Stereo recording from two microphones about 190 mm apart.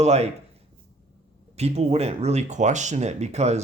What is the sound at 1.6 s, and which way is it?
Speech, 35° right (ahead or behind).